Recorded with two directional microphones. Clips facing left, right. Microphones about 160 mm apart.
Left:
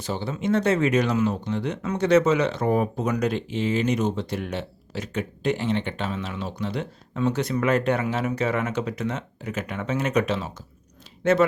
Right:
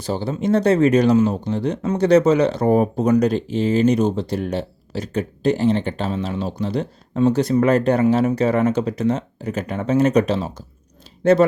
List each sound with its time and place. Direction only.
0.0 s speech: 35° right (ahead or behind)